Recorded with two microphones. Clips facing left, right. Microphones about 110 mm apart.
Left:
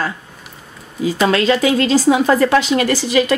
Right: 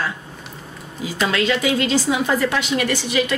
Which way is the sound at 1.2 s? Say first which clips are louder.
Left 5 dB; 35° left (ahead or behind).